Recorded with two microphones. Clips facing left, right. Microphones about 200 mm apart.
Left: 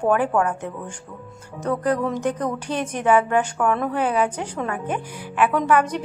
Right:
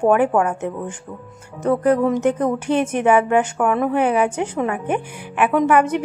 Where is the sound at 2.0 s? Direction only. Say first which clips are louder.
Right 6 dB; 25° right (ahead or behind).